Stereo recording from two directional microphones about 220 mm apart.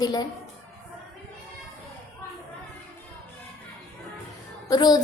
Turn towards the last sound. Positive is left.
turn(degrees=15)  # may be behind; listen again after turning